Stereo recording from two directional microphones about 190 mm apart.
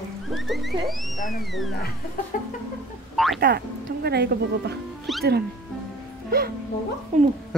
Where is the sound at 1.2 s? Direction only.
45° left (ahead or behind).